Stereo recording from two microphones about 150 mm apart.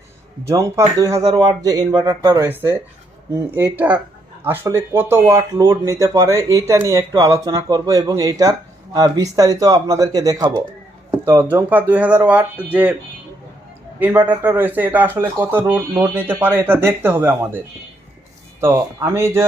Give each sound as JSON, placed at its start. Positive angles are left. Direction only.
{"t": 0.4, "sound": "speech", "side_deg": -20}
{"t": 2.5, "sound": "speech", "side_deg": -15}
{"t": 11.1, "sound": "speech", "side_deg": -15}
{"t": 14.0, "sound": "speech", "side_deg": -10}
{"t": 18.6, "sound": "speech", "side_deg": -15}